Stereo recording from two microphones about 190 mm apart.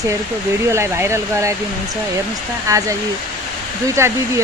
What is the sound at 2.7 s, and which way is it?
Speech, 15° right (ahead or behind).